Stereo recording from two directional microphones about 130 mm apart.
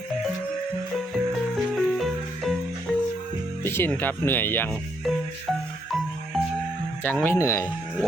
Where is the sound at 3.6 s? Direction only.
15° left (ahead or behind).